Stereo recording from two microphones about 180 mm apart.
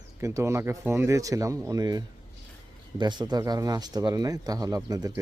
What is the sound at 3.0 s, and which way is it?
Speech, 25° right (ahead or behind).